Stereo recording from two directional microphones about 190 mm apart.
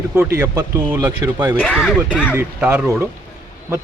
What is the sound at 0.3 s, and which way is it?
Speech, 15° right (ahead or behind).